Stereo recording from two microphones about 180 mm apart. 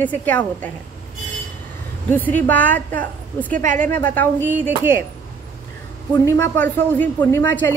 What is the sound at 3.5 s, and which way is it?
Speech, 45° right (ahead or behind).